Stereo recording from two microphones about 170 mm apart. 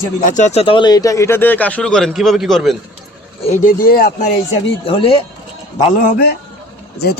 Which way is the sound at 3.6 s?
60° left (ahead or behind).